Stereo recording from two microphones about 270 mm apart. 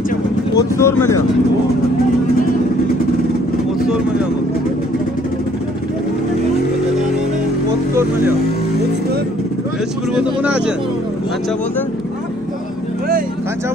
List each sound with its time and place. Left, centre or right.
0.6 s speech: centre
10.1 s speech: centre